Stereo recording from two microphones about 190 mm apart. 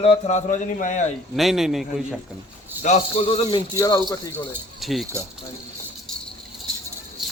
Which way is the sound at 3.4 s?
25° left (ahead or behind).